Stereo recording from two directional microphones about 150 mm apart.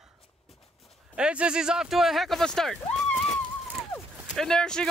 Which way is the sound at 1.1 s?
5° right (ahead or behind).